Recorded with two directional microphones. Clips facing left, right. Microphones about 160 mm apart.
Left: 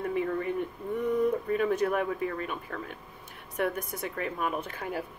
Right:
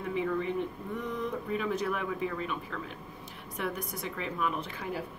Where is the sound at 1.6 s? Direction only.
50° left (ahead or behind).